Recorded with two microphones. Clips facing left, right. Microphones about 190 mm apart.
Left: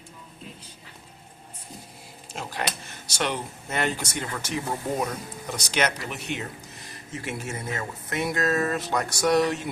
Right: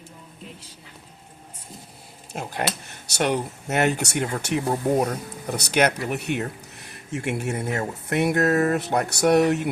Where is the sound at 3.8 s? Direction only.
65° right (ahead or behind).